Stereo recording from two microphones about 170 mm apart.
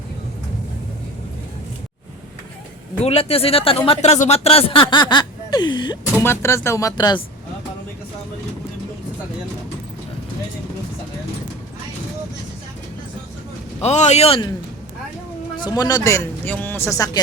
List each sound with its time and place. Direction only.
3.0 s speech: 35° left (ahead or behind)
6.2 s speech: 15° left (ahead or behind)
13.8 s speech: 40° left (ahead or behind)
15.5 s speech: 25° left (ahead or behind)